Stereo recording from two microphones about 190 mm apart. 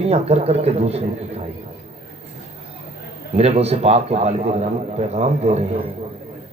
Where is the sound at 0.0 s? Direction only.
35° right (ahead or behind).